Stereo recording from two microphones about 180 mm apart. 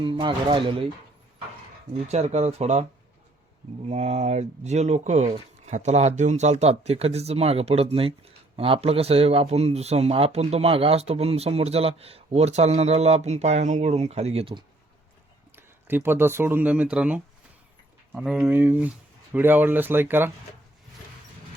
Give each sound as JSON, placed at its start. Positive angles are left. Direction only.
{"t": 0.0, "sound": "speech", "side_deg": -30}
{"t": 1.9, "sound": "speech", "side_deg": -35}
{"t": 3.8, "sound": "speech", "side_deg": -40}
{"t": 15.5, "sound": "speech", "side_deg": -10}